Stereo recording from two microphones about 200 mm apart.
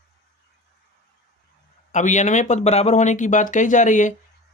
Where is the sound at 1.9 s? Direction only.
35° left (ahead or behind).